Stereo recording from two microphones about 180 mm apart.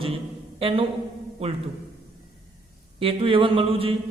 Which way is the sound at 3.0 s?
30° right (ahead or behind).